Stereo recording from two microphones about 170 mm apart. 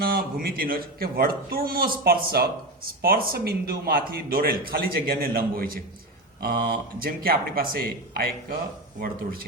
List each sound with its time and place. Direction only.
0.0 s a man's voice: 60° right (ahead or behind)